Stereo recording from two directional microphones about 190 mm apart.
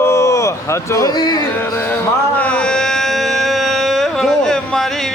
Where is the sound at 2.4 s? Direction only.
5° left (ahead or behind).